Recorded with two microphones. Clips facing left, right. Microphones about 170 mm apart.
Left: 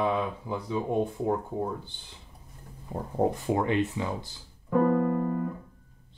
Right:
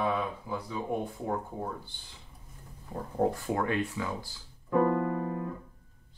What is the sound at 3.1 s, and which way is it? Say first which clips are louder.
Speech: left 3 dB; 20° left (ahead or behind).